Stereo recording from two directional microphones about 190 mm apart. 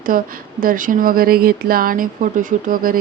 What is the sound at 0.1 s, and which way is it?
Speech, 45° right (ahead or behind).